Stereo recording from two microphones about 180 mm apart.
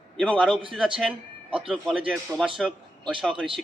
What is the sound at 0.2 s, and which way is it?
A man's voice, centre (ahead or behind).